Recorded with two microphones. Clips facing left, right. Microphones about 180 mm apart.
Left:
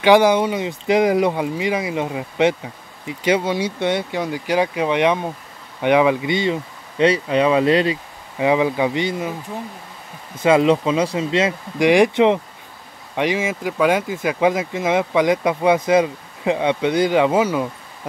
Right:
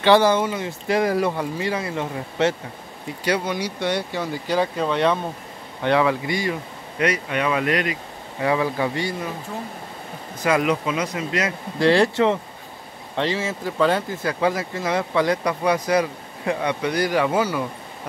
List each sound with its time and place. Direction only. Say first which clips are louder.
0.0 s speech: left 3 dB; 15° left (ahead or behind)
8.4 s speech: left 4 dB; 15° left (ahead or behind)
10.4 s speech: left 6 dB; 25° left (ahead or behind)